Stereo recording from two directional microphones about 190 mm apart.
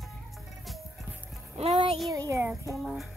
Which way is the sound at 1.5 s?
30° right (ahead or behind).